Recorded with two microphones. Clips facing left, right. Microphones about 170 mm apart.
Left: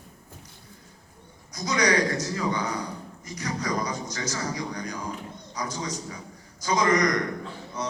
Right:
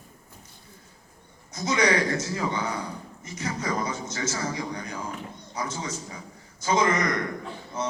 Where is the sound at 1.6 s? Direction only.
25° right (ahead or behind).